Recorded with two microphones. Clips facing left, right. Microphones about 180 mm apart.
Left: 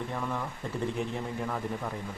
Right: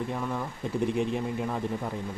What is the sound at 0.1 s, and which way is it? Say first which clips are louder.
Speech: right 2 dB; 15° right (ahead or behind).